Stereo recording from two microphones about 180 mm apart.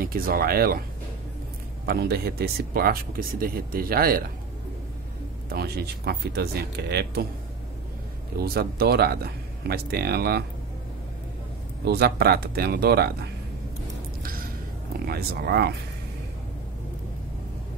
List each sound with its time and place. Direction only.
0.0 s speech: 55° right (ahead or behind)
1.9 s speech: 60° right (ahead or behind)
5.5 s speech: 60° right (ahead or behind)
8.4 s speech: 60° right (ahead or behind)
11.8 s speech: 65° right (ahead or behind)
15.0 s speech: 60° right (ahead or behind)